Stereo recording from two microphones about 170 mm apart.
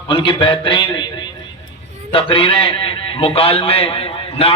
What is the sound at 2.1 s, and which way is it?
A man's voice, 30° left (ahead or behind).